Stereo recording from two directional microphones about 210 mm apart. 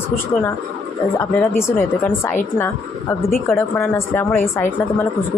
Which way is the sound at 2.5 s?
10° left (ahead or behind).